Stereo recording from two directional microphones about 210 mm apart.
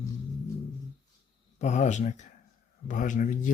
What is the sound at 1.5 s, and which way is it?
Speech, 35° left (ahead or behind).